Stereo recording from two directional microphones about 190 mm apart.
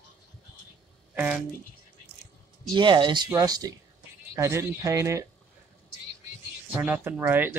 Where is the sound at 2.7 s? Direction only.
25° right (ahead or behind).